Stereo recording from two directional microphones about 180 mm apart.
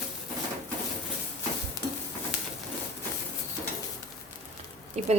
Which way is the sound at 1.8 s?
20° left (ahead or behind).